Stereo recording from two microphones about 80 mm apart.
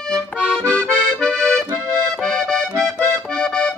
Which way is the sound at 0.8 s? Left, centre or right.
Centre.